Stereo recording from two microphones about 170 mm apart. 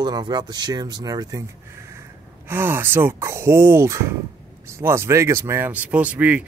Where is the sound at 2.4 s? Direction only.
15° right (ahead or behind).